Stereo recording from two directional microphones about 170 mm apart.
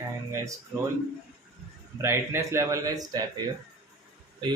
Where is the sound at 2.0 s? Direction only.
15° right (ahead or behind).